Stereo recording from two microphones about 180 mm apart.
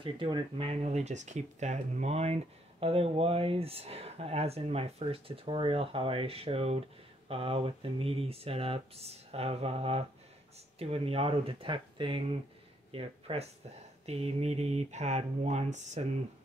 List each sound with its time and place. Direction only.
0.0 s speech: 30° right (ahead or behind)